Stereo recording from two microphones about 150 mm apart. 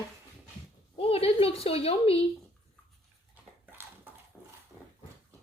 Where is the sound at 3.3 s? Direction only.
15° right (ahead or behind).